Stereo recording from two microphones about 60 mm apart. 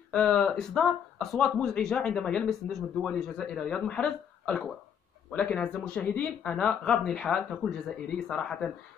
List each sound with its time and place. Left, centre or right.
0.1 s speech: centre